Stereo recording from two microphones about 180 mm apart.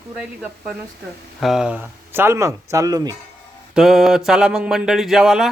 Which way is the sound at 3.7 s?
Centre (ahead or behind).